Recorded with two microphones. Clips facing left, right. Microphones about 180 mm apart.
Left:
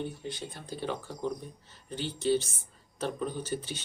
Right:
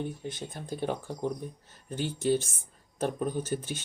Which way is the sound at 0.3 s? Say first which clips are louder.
Right 2 dB; 50° right (ahead or behind).